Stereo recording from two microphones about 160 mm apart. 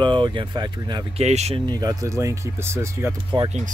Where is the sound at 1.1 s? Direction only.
45° right (ahead or behind).